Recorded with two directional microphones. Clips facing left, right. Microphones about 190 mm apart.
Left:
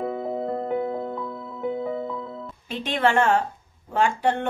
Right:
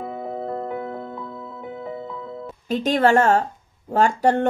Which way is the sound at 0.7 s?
25° left (ahead or behind).